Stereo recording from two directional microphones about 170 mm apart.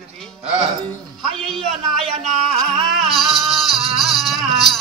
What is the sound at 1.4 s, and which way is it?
Speech, centre (ahead or behind).